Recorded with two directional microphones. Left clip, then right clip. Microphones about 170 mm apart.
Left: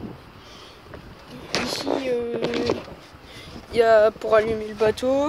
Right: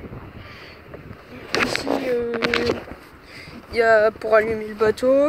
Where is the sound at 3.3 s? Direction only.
20° left (ahead or behind).